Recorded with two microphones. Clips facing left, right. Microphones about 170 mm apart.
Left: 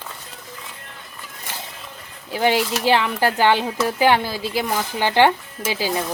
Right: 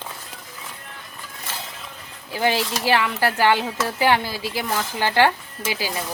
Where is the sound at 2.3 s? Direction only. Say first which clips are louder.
Left 3 dB; 15° left (ahead or behind).